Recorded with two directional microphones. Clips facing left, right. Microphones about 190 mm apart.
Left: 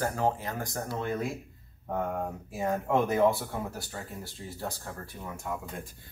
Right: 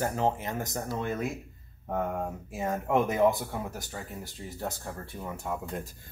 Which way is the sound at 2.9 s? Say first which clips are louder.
Right 1 dB; 15° right (ahead or behind).